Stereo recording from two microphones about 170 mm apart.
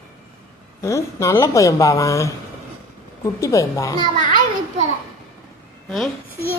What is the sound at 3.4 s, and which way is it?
Speech, 20° left (ahead or behind).